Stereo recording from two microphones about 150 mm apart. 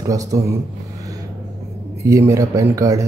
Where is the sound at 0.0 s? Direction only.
20° right (ahead or behind).